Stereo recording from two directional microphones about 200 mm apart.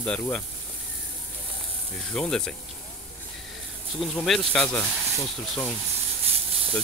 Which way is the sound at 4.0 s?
5° left (ahead or behind).